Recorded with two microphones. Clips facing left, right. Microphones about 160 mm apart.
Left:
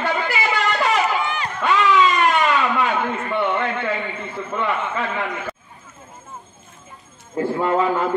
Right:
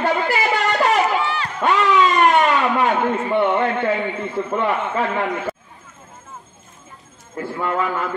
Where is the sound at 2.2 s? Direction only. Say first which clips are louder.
Right 3 dB; 50° right (ahead or behind).